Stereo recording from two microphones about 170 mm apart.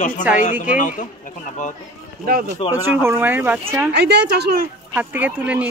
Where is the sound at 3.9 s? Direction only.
80° right.